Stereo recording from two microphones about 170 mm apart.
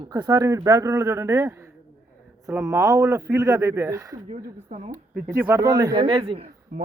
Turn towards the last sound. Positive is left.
turn(degrees=-50)  # may be behind; listen again after turning